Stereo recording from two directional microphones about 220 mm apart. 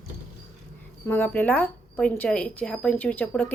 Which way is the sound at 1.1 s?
10° left (ahead or behind).